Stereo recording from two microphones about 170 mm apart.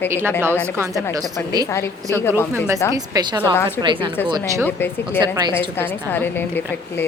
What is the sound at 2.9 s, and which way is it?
Speech, 25° right (ahead or behind).